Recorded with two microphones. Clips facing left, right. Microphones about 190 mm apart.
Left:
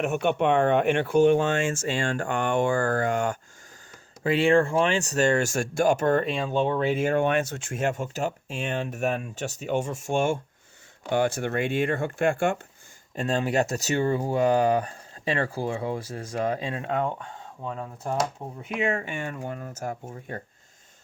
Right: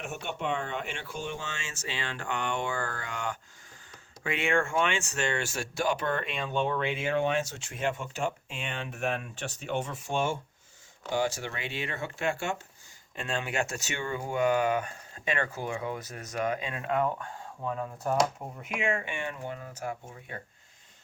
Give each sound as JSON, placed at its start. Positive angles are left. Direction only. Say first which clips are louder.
{"t": 0.0, "sound": "speech", "louder": "left 11 dB", "side_deg": 65}
{"t": 4.2, "sound": "speech", "louder": "left 8 dB", "side_deg": 35}
{"t": 13.1, "sound": "speech", "louder": "left 7 dB", "side_deg": 40}
{"t": 18.8, "sound": "speech", "louder": "left 4 dB", "side_deg": 40}